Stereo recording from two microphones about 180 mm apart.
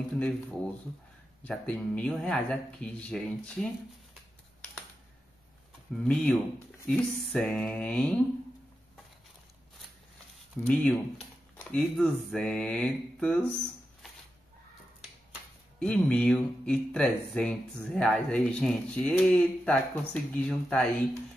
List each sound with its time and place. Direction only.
1.4 s speech: 5° left (ahead or behind)
6.0 s speech: 10° left (ahead or behind)
10.6 s speech: 5° left (ahead or behind)
15.8 s speech: 5° left (ahead or behind)